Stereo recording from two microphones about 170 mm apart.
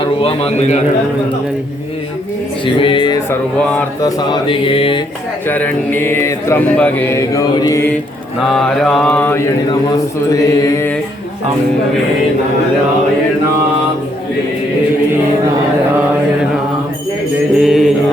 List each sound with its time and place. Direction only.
0.0 s a man's voice: 35° left (ahead or behind)
2.6 s mantra: 30° left (ahead or behind)
5.5 s mantra: 10° left (ahead or behind)
8.4 s mantra: centre (ahead or behind)
17.6 s mantra: centre (ahead or behind)